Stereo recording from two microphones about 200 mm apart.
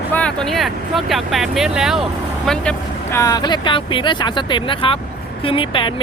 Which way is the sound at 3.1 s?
15° left (ahead or behind).